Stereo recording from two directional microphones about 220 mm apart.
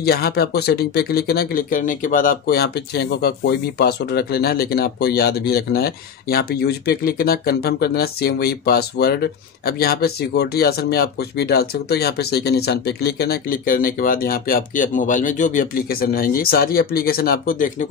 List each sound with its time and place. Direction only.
0.0 s speech: 45° left (ahead or behind)